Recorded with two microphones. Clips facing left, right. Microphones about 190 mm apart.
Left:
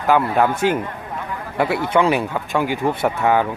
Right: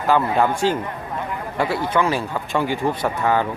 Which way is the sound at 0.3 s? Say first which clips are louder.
Left 1 dB; 15° left (ahead or behind).